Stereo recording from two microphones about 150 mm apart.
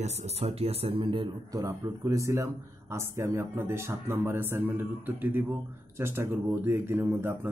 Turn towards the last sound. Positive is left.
turn(degrees=-15)  # may be behind; listen again after turning